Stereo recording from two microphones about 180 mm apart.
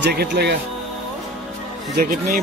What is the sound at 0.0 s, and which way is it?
Speech, 65° right (ahead or behind).